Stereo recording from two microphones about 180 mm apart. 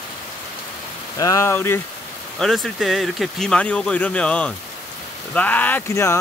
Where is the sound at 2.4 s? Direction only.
Centre (ahead or behind).